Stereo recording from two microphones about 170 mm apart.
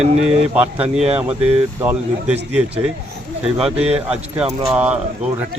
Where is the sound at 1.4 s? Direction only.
35° right (ahead or behind).